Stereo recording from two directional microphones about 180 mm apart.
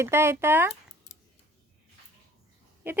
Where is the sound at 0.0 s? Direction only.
15° right (ahead or behind).